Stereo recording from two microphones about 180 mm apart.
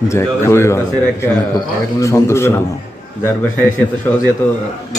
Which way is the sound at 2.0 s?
15° left (ahead or behind).